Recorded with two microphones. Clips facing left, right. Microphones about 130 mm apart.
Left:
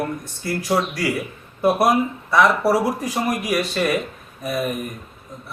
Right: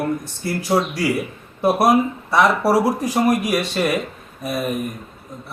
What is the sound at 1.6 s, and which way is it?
Speech, 5° right (ahead or behind).